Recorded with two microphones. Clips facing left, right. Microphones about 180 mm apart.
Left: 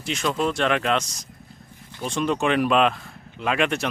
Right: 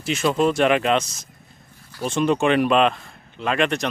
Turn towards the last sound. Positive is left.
turn(degrees=5)  # may be behind; listen again after turning